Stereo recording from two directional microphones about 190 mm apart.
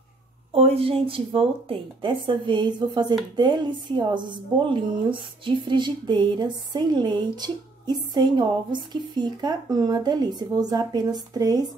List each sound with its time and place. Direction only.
0.5 s a woman's voice: 30° right (ahead or behind)